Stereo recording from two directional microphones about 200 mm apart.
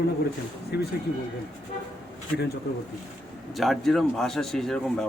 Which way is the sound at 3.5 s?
Centre (ahead or behind).